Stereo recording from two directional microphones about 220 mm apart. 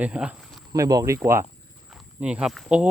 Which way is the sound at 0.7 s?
15° right (ahead or behind).